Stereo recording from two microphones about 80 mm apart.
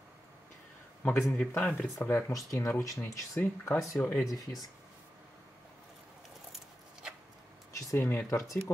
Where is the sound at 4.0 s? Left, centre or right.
Left.